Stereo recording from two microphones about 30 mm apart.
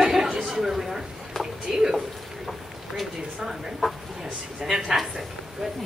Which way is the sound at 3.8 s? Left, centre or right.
Centre.